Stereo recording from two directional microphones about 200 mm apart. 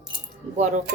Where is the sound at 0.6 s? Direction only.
35° right (ahead or behind).